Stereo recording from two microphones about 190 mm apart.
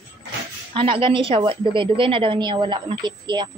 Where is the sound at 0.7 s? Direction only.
25° right (ahead or behind).